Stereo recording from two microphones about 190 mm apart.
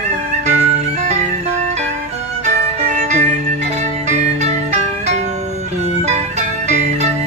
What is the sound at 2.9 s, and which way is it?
Music, 40° right (ahead or behind).